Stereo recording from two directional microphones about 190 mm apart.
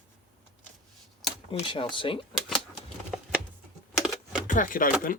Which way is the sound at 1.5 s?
25° left (ahead or behind).